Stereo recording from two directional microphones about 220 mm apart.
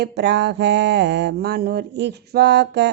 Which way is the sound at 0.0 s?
50° right (ahead or behind).